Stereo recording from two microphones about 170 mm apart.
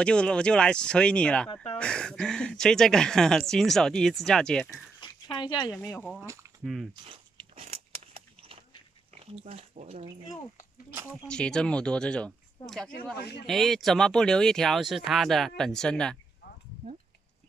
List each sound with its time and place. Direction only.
0.0 s speech: 5° left (ahead or behind)
5.0 s a sound: 25° left (ahead or behind)
5.7 s speech: 15° left (ahead or behind)
6.2 s speech: 15° right (ahead or behind)
6.6 s speech: centre (ahead or behind)
7.1 s biting: 35° right (ahead or behind)
9.2 s speech: 35° right (ahead or behind)
11.2 s speech: 5° left (ahead or behind)
13.2 s speech: 75° left (ahead or behind)
13.5 s speech: centre (ahead or behind)